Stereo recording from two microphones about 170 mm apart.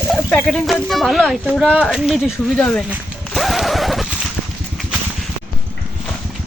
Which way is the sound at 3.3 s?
Centre (ahead or behind).